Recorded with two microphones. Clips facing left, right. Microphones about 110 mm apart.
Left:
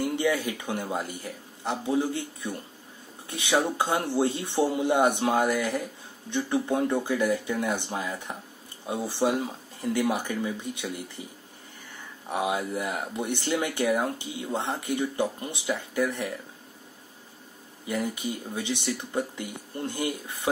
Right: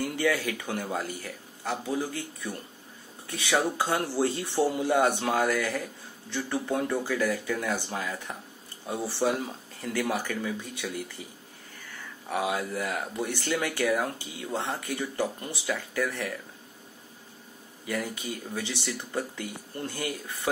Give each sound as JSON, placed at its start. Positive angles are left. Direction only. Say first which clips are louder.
{"t": 0.0, "sound": "speech", "louder": "left 1 dB", "side_deg": 20}
{"t": 17.8, "sound": "speech", "louder": "left 3 dB", "side_deg": 20}